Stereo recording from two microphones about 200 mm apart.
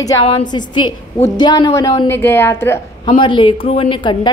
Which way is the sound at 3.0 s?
25° left (ahead or behind).